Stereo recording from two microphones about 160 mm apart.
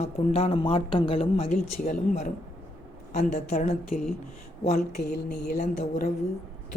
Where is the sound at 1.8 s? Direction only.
60° left (ahead or behind).